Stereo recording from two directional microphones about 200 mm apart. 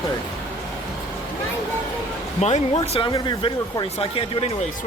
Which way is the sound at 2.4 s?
30° left (ahead or behind).